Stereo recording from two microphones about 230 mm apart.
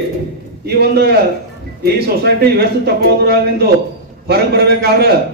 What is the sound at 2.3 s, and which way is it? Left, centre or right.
A man's voice, right.